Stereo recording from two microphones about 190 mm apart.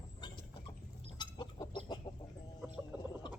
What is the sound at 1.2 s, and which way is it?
Chicken, 25° left (ahead or behind).